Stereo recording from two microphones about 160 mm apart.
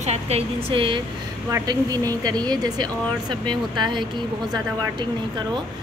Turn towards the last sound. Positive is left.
turn(degrees=-30)  # may be behind; listen again after turning